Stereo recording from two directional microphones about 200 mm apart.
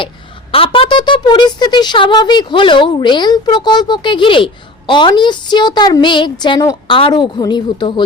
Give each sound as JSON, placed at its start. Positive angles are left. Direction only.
{"t": 0.5, "sound": "speech", "side_deg": 25}